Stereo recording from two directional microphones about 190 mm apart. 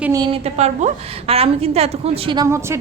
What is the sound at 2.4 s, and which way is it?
Speech, 15° right (ahead or behind).